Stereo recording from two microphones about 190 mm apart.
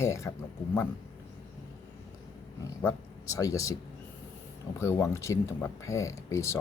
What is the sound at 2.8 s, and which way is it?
Speech, 15° left (ahead or behind).